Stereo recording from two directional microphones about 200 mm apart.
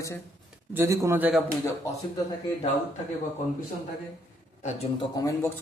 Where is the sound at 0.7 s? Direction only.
15° right (ahead or behind).